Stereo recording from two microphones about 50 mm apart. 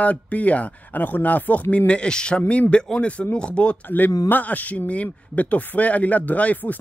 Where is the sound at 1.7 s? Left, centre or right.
Left.